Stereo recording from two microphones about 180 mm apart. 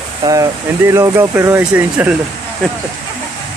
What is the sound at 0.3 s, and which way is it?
Speech, 15° right (ahead or behind).